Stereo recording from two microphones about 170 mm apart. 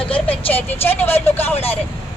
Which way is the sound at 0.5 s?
10° left (ahead or behind).